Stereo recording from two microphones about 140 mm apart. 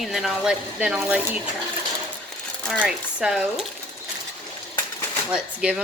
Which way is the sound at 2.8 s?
5° right (ahead or behind).